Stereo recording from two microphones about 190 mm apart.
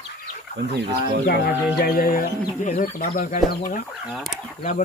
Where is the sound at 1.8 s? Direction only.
50° left (ahead or behind).